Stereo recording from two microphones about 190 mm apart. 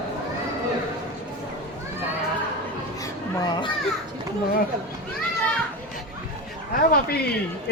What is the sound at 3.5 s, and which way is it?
Children playing, 25° left (ahead or behind).